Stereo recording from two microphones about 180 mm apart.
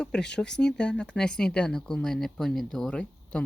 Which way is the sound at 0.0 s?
5° left (ahead or behind).